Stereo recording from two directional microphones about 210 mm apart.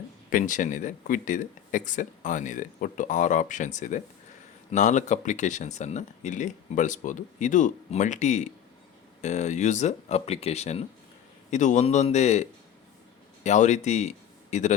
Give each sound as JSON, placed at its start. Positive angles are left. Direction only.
{"t": 0.3, "sound": "speech", "side_deg": 40}